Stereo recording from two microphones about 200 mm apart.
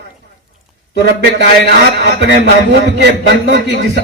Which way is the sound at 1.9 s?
55° right (ahead or behind).